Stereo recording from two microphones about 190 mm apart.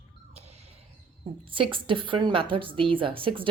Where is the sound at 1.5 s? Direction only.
25° right (ahead or behind).